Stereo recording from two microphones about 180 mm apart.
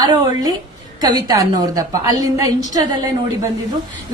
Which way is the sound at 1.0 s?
20° right (ahead or behind).